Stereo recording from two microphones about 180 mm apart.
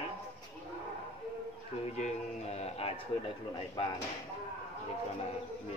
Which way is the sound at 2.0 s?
40° left (ahead or behind).